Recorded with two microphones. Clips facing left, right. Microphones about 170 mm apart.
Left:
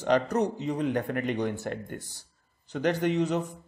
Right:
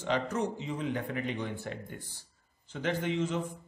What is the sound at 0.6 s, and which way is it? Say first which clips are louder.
A man's voice: left 6 dB; 40° left (ahead or behind).